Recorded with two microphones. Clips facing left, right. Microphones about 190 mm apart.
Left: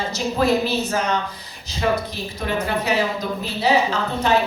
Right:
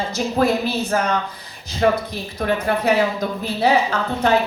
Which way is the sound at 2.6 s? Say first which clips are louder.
Right 4 dB; 55° right (ahead or behind).